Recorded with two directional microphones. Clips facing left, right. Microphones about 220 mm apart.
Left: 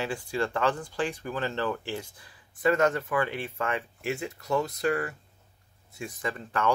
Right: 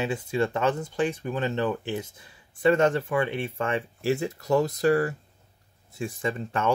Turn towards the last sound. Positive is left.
turn(degrees=-25)  # may be behind; listen again after turning